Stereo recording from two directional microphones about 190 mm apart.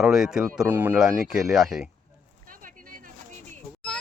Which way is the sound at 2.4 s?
45° right (ahead or behind).